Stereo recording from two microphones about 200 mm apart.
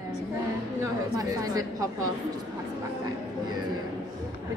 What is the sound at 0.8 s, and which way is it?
A woman's voice, 15° right (ahead or behind).